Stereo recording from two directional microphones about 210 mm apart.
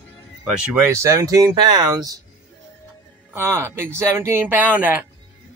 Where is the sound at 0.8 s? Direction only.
15° right (ahead or behind).